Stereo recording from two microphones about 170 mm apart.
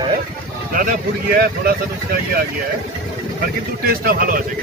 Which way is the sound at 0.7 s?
55° right (ahead or behind).